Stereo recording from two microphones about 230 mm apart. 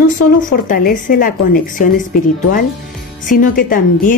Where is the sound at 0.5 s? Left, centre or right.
Left.